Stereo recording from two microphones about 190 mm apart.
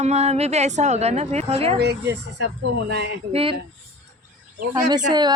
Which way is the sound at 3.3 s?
30° right (ahead or behind).